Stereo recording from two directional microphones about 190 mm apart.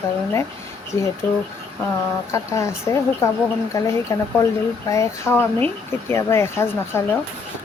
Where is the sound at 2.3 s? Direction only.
15° left (ahead or behind).